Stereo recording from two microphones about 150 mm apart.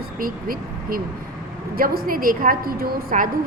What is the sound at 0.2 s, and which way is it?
Speech, 70° right (ahead or behind).